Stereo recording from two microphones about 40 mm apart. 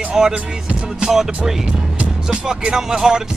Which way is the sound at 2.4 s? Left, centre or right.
Centre.